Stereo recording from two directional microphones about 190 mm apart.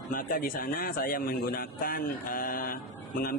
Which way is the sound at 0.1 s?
45° left (ahead or behind).